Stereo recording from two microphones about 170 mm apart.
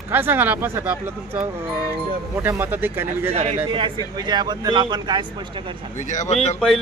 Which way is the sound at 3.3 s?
40° right (ahead or behind).